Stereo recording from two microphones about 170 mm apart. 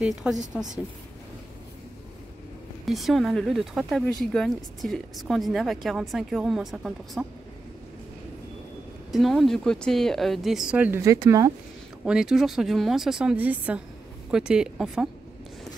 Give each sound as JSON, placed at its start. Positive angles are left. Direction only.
{"t": 0.0, "sound": "a woman's voice", "side_deg": -5}
{"t": 2.8, "sound": "a woman's voice", "side_deg": 0}
{"t": 9.1, "sound": "a woman's voice", "side_deg": 0}
{"t": 12.0, "sound": "a woman's voice", "side_deg": -5}